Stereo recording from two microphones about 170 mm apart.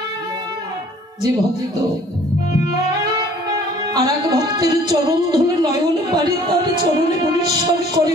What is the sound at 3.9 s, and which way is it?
Speech, 20° right (ahead or behind).